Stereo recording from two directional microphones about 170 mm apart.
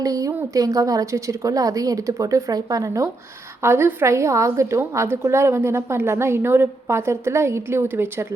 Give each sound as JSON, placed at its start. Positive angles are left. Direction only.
{"t": 0.0, "sound": "a woman's voice", "side_deg": -20}